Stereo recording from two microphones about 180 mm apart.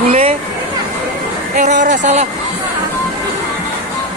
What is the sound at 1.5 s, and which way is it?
Speech, 45° right (ahead or behind).